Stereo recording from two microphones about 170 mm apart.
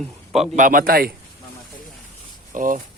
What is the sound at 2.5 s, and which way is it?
Speech, 50° right (ahead or behind).